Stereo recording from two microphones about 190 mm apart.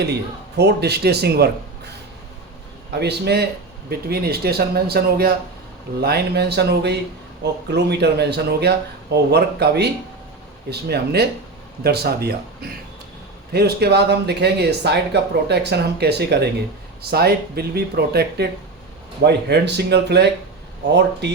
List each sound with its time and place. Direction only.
0.0 s speech: 60° right (ahead or behind)
2.9 s speech: 60° right (ahead or behind)